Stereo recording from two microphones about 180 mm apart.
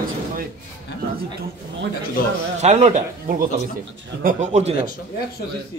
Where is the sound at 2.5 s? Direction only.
40° right (ahead or behind).